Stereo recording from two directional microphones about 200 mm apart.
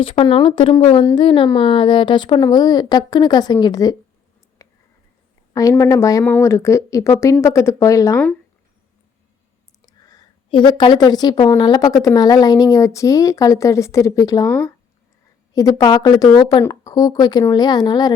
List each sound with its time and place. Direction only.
0.0 s speech: 25° left (ahead or behind)
4.6 s a sound: 15° left (ahead or behind)
5.5 s a woman's voice: 15° left (ahead or behind)
9.8 s a sound: 20° left (ahead or behind)
11.5 s a woman's voice: 20° left (ahead or behind)
15.5 s speech: 15° left (ahead or behind)